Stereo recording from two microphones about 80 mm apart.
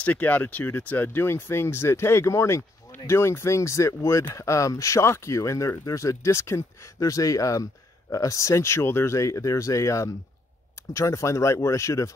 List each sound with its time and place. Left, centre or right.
0.0 s speech: centre; by 12.1 s left